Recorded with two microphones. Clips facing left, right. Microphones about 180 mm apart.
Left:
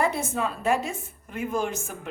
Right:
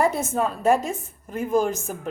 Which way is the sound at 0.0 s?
45° right (ahead or behind).